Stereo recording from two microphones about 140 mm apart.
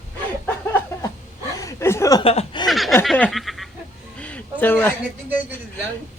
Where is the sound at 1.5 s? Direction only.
20° left (ahead or behind).